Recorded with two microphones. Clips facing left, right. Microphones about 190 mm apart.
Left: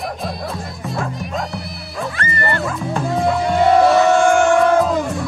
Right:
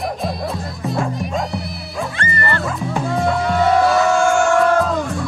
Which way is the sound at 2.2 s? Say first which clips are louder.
Even; 30° right (ahead or behind).